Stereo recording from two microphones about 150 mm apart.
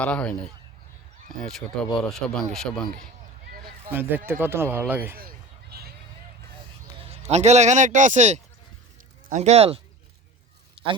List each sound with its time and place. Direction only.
0.0 s speech: 10° left (ahead or behind)
3.8 s speech: 15° right (ahead or behind)
5.1 s a sound: 75° right (ahead or behind)
7.0 s speech: 45° right (ahead or behind)